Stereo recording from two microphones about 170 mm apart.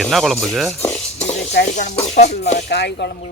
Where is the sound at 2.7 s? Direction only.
75° left (ahead or behind).